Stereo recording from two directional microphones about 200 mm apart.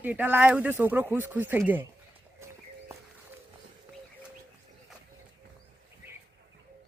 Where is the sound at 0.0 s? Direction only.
10° right (ahead or behind).